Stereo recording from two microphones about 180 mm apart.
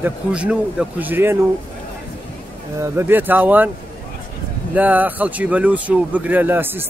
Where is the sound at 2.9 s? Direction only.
10° right (ahead or behind).